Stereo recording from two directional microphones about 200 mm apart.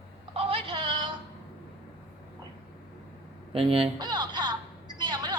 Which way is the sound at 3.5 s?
30° right (ahead or behind).